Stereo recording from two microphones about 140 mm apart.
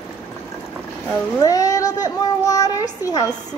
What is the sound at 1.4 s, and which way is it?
A woman's voice, 25° left (ahead or behind).